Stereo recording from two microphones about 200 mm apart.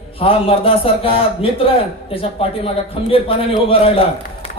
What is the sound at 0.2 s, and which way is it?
A man's voice, 30° left (ahead or behind).